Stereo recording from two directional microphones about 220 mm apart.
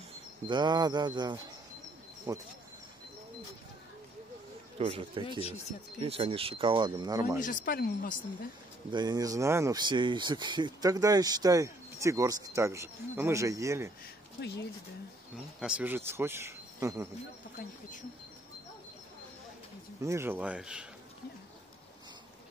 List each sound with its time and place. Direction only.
0.5 s speech: 20° right (ahead or behind)
4.7 s speech: 25° right (ahead or behind)
7.4 s speech: 40° left (ahead or behind)
8.9 s speech: 15° right (ahead or behind)
14.4 s speech: 50° left (ahead or behind)
15.6 s speech: 5° right (ahead or behind)
20.0 s speech: 10° right (ahead or behind)